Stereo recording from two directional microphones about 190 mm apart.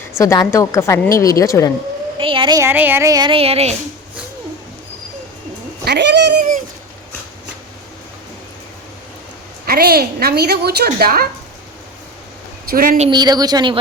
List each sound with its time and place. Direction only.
0.2 s a woman's voice: 15° left (ahead or behind)
2.1 s speech: 25° right (ahead or behind)
5.8 s speech: 65° right (ahead or behind)
9.6 s a woman's voice: 50° right (ahead or behind)
12.7 s a woman's voice: 50° right (ahead or behind)
13.0 s speech: 25° right (ahead or behind)